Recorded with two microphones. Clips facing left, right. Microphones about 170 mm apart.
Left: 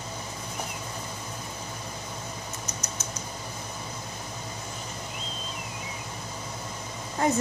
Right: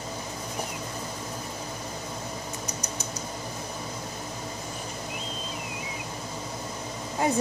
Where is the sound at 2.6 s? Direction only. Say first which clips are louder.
Right 2 dB; 35° right (ahead or behind).